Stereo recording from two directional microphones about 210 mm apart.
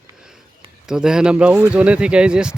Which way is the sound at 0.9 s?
5° right (ahead or behind).